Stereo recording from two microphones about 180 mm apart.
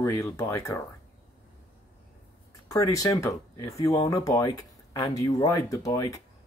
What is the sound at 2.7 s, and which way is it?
Speech, 20° left (ahead or behind).